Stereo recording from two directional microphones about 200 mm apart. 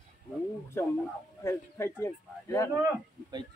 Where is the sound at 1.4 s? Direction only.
15° left (ahead or behind).